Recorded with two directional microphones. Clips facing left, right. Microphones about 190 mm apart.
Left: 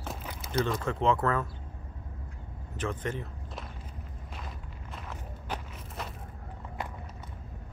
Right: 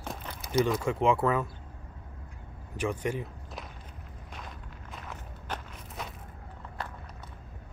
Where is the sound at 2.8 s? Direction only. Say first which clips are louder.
Right 3 dB; 10° right (ahead or behind).